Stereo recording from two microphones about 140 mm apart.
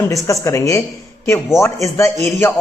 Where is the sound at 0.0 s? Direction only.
25° left (ahead or behind).